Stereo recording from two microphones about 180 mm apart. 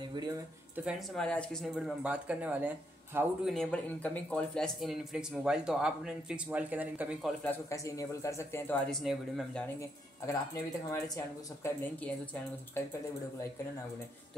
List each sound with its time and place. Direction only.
0.1 s speech: 25° right (ahead or behind)
0.8 s a man's voice: centre (ahead or behind)
7.5 s a man's voice: 15° left (ahead or behind)
9.8 s speech: 15° left (ahead or behind)